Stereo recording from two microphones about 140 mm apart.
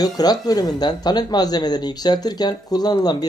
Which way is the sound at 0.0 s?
30° left (ahead or behind).